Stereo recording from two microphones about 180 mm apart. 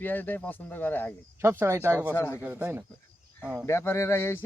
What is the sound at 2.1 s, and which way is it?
Speech, 15° left (ahead or behind).